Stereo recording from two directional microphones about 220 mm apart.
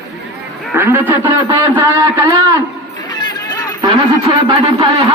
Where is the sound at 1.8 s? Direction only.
20° right (ahead or behind).